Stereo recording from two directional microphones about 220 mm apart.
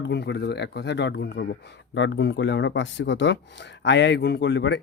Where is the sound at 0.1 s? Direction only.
50° left (ahead or behind).